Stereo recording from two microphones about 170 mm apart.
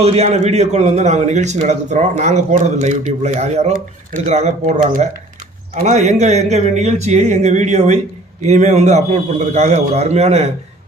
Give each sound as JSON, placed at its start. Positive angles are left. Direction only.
{"t": 0.0, "sound": "a man's voice", "side_deg": -40}